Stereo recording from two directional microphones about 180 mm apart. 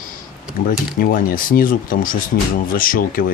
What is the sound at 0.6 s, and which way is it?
Speech, 50° left (ahead or behind).